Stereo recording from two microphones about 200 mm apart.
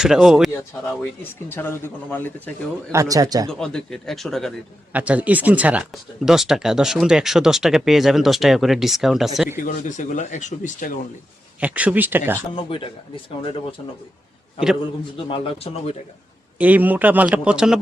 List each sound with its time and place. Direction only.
0.0 s speech: centre (ahead or behind)
0.9 s speech: 10° left (ahead or behind)
2.9 s speech: 15° right (ahead or behind)
3.4 s speech: 5° left (ahead or behind)
9.6 s speech: 35° left (ahead or behind)
11.6 s speech: 5° right (ahead or behind)
12.5 s a man's voice: 25° left (ahead or behind)
15.3 s a man's voice: 30° left (ahead or behind)
16.6 s speech: 10° right (ahead or behind)